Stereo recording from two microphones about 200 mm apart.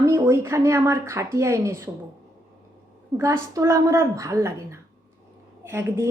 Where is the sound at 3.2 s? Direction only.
15° right (ahead or behind).